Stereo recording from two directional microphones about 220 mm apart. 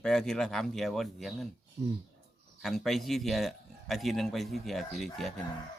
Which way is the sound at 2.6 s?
Centre (ahead or behind).